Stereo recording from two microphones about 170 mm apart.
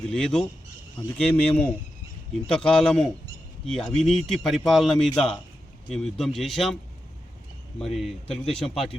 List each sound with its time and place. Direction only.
0.0 s speech: 5° left (ahead or behind)
7.8 s speech: centre (ahead or behind)